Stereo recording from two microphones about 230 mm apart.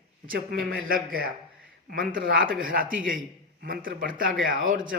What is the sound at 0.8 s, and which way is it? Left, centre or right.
A man's voice, right.